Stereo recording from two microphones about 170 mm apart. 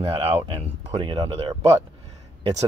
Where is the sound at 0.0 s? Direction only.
30° right (ahead or behind).